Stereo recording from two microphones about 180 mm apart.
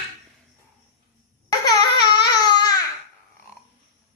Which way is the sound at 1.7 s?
25° left (ahead or behind).